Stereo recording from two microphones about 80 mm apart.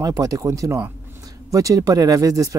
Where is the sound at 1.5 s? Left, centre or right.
Right.